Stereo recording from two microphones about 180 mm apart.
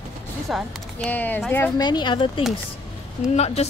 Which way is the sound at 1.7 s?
25° left (ahead or behind).